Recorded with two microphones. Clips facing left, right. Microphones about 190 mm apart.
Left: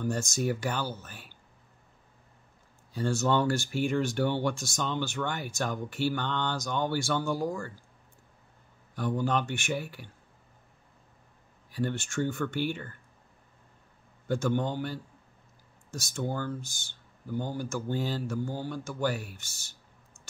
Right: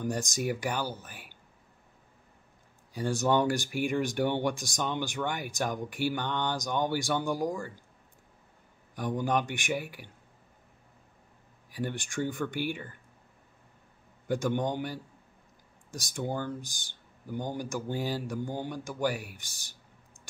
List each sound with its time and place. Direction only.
0.0 s speech: 15° right (ahead or behind)
2.9 s speech: 15° right (ahead or behind)
8.9 s speech: 15° right (ahead or behind)
11.7 s speech: 15° right (ahead or behind)
14.2 s speech: 15° right (ahead or behind)